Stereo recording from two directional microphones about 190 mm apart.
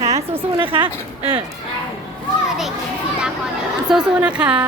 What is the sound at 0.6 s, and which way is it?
Speech, 25° right (ahead or behind).